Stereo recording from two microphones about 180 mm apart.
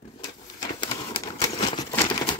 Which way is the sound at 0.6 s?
25° left (ahead or behind).